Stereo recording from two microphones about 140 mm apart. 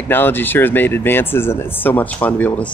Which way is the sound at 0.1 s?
15° left (ahead or behind).